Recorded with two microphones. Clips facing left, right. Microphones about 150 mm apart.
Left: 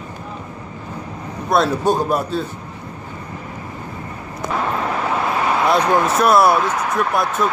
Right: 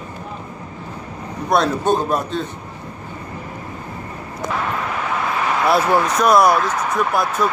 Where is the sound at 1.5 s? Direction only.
5° left (ahead or behind).